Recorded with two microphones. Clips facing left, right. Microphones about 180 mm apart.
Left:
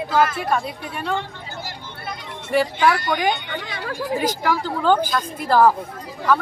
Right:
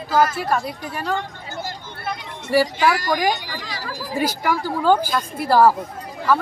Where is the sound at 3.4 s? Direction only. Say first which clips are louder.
Left 2 dB; 60° left (ahead or behind).